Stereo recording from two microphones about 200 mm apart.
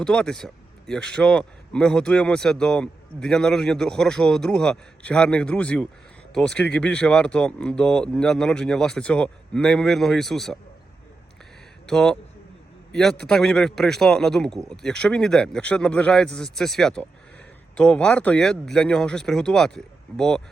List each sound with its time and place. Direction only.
0.0 s a man's voice: 5° left (ahead or behind)
11.9 s a man's voice: centre (ahead or behind)